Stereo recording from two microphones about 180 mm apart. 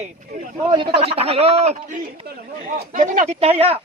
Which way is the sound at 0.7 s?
25° right (ahead or behind).